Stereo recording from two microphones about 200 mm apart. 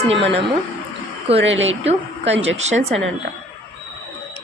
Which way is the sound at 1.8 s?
30° right (ahead or behind).